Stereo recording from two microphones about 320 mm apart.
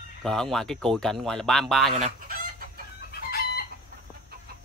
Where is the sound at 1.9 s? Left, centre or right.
Right.